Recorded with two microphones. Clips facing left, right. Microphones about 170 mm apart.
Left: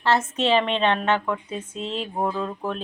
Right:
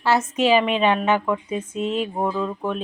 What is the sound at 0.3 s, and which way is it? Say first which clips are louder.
Speech: right 3 dB; 10° right (ahead or behind).